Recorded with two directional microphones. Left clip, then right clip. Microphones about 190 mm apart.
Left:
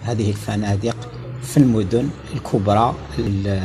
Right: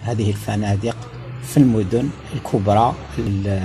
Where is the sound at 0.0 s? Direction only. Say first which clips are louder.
Even; 30° right (ahead or behind).